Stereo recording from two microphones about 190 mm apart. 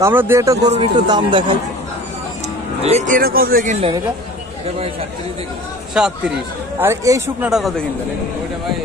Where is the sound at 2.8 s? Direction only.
35° right (ahead or behind).